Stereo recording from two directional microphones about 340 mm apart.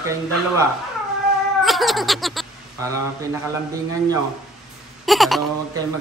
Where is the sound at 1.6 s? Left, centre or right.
Centre.